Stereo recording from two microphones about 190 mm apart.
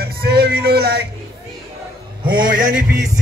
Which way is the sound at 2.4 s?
45° right (ahead or behind).